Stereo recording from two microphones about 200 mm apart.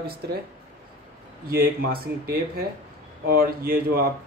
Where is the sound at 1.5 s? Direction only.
50° right (ahead or behind).